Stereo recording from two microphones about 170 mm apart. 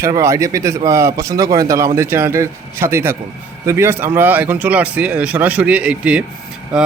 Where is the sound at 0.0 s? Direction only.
15° right (ahead or behind).